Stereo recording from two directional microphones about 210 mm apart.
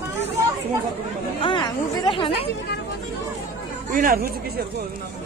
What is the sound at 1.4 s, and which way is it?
Chatter, 20° left (ahead or behind).